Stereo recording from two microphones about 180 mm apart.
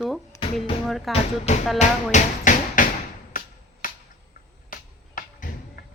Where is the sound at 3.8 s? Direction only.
50° left (ahead or behind).